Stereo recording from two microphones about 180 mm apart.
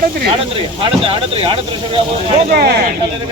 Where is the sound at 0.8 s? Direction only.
30° right (ahead or behind).